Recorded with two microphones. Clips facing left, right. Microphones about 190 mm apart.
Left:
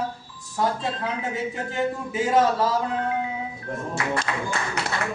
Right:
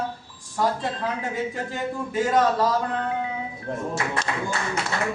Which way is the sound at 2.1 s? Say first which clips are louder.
Right 1 dB; 5° left (ahead or behind).